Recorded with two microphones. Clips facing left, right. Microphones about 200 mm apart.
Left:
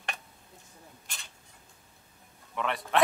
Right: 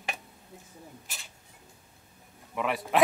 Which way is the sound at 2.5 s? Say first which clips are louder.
Right 2 dB; 5° right (ahead or behind).